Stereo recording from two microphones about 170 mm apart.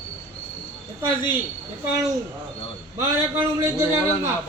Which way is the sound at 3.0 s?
15° right (ahead or behind).